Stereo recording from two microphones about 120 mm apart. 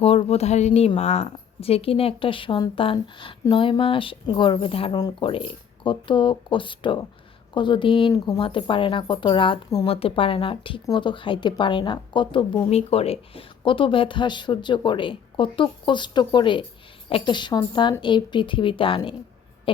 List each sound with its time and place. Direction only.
0.0 s a woman's voice: 55° left (ahead or behind)